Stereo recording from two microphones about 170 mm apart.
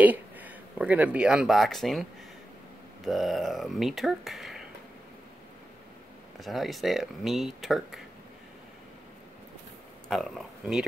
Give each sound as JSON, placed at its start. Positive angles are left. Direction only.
{"t": 0.0, "sound": "speech", "side_deg": -10}
{"t": 3.1, "sound": "speech", "side_deg": 0}
{"t": 6.4, "sound": "speech", "side_deg": 0}
{"t": 10.0, "sound": "speech", "side_deg": 0}